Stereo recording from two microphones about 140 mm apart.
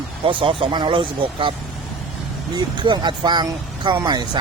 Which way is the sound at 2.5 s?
35° right (ahead or behind).